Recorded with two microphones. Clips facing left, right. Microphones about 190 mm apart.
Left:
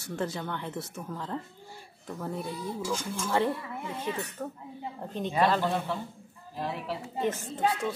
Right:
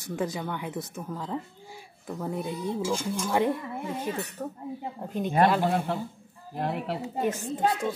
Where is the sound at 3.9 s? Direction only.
40° right (ahead or behind).